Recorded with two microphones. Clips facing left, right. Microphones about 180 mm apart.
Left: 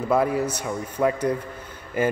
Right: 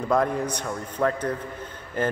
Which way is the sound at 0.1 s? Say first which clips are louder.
Left 2 dB; 5° left (ahead or behind).